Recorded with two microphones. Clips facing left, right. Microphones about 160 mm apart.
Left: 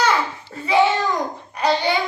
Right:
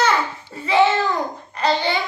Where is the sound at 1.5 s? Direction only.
15° left (ahead or behind).